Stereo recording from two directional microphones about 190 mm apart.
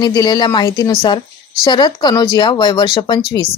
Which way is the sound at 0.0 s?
20° left (ahead or behind).